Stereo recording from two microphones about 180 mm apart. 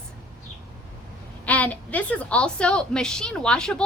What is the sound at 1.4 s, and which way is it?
A woman's voice, 10° left (ahead or behind).